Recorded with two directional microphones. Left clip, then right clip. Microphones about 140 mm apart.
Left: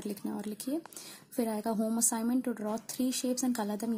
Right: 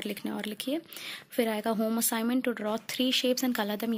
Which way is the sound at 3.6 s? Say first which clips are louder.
Right 4 dB; 25° right (ahead or behind).